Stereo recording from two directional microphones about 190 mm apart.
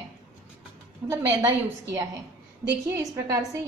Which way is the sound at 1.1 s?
20° right (ahead or behind).